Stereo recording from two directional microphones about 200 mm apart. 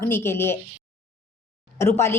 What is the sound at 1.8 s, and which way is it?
Speech, 15° left (ahead or behind).